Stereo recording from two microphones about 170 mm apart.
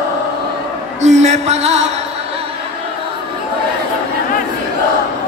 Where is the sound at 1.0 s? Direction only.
40° right (ahead or behind).